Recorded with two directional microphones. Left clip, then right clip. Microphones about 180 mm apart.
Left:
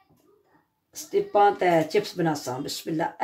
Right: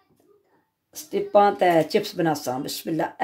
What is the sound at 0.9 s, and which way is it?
Speech, 50° right (ahead or behind).